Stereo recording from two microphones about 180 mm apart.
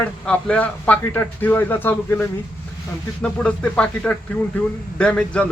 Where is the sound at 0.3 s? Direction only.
5° left (ahead or behind).